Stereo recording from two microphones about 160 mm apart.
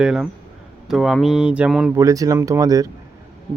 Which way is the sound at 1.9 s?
20° right (ahead or behind).